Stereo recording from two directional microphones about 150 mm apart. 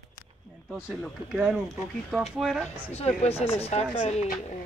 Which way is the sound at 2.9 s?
45° left (ahead or behind).